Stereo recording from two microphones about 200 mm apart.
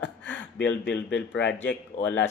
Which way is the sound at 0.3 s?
10° left (ahead or behind).